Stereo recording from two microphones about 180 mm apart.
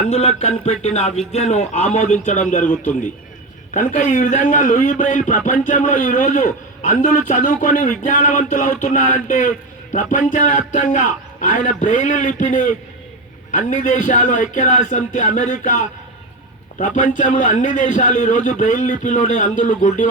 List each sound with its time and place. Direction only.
0.3 s a man's voice: 40° left (ahead or behind)